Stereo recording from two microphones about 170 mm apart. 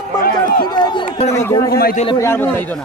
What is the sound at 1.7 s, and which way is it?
Speech, 65° left (ahead or behind).